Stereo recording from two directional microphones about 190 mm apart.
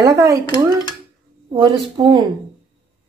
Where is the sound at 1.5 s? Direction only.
20° right (ahead or behind).